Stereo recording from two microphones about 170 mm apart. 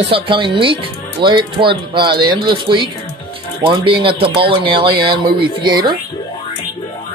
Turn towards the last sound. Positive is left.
turn(degrees=-25)  # may be behind; listen again after turning